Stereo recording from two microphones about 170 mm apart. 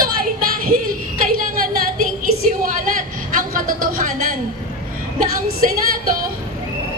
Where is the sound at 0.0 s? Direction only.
55° right (ahead or behind).